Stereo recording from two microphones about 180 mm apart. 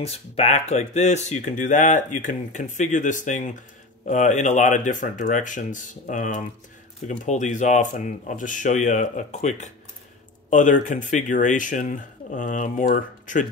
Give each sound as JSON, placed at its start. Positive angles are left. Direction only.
{"t": 0.0, "sound": "speech", "side_deg": 35}